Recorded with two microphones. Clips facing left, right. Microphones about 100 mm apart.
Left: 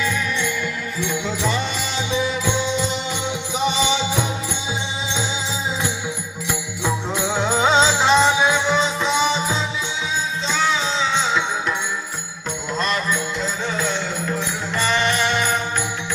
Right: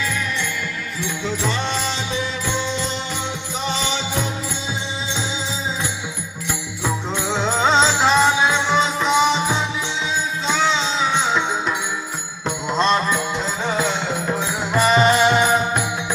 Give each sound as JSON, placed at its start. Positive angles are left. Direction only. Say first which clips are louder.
{"t": 7.3, "sound": "music", "louder": "even", "side_deg": 5}
{"t": 8.6, "sound": "music", "louder": "right 1 dB", "side_deg": -15}
{"t": 10.4, "sound": "music", "louder": "right 2 dB", "side_deg": -15}
{"t": 12.5, "sound": "music", "louder": "right 5 dB", "side_deg": -25}